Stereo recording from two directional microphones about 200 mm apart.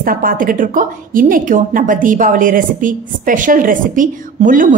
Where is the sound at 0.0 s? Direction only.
45° right (ahead or behind).